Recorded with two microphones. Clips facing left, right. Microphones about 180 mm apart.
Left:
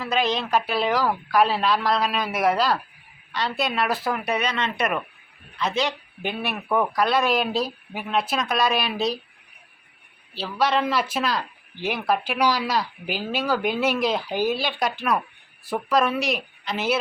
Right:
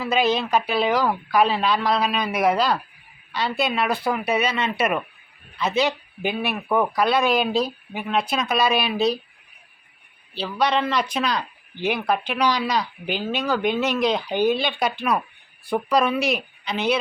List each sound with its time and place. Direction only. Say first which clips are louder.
0.0 s a man's voice: right 3 dB; 5° right (ahead or behind)
10.3 s a man's voice: right 1 dB; centre (ahead or behind)